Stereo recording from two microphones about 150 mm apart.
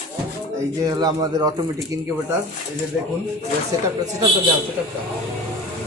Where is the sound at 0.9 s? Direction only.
25° right (ahead or behind).